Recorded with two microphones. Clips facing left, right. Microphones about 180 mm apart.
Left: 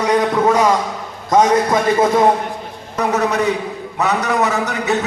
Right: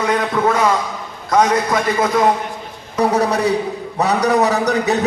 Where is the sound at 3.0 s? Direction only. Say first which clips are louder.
Right 1 dB; 35° right (ahead or behind).